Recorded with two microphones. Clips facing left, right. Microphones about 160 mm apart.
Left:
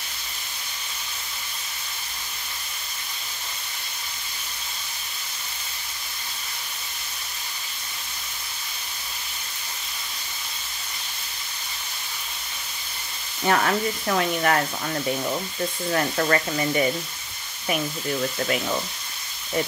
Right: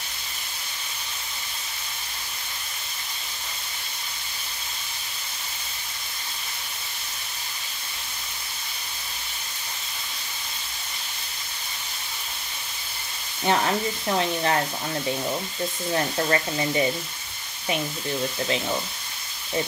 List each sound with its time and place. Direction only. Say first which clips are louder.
13.5 s speech: left 1 dB; 25° right (ahead or behind)
15.9 s speech: left 1 dB; 25° right (ahead or behind)